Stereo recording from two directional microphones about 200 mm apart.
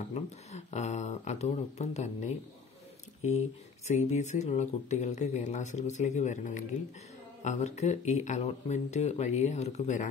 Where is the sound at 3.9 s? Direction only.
35° left (ahead or behind).